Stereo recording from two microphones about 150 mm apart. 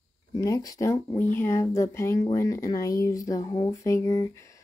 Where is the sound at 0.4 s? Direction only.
25° left (ahead or behind).